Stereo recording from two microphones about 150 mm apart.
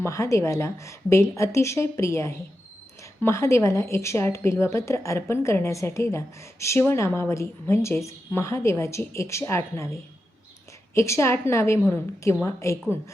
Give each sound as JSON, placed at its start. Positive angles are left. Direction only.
{"t": 0.0, "sound": "a woman's voice", "side_deg": 20}